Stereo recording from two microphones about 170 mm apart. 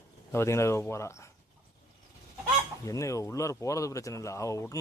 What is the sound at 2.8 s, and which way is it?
Speech, 20° left (ahead or behind).